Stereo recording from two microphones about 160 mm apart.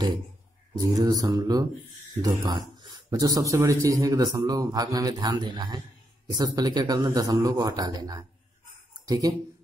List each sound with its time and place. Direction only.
0.7 s speech: 20° right (ahead or behind)